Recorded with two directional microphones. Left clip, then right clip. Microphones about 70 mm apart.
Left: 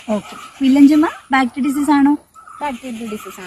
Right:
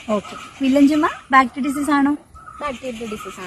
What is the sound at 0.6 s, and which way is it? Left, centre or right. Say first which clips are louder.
Speech: left 4 dB; right.